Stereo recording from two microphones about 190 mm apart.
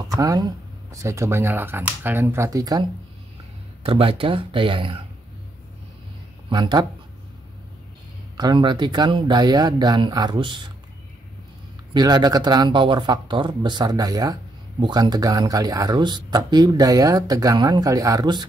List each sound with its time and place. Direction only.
0.1 s speech: 20° right (ahead or behind)
3.8 s speech: 30° right (ahead or behind)
6.5 s speech: 20° right (ahead or behind)
8.4 s speech: 20° right (ahead or behind)
11.9 s speech: 20° right (ahead or behind)